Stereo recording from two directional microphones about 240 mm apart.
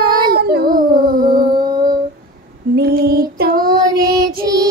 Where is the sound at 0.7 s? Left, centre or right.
Right.